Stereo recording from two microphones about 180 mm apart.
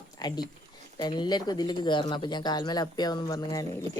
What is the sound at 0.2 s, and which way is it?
Speech, 20° left (ahead or behind).